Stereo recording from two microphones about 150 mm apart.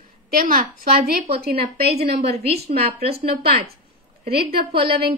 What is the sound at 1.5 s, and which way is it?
A woman's voice, 45° right (ahead or behind).